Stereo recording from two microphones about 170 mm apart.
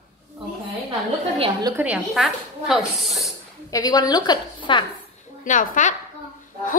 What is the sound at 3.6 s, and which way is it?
A woman's voice, 20° left (ahead or behind).